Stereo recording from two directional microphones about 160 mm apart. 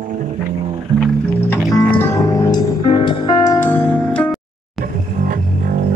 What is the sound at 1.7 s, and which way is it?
Music, 20° left (ahead or behind).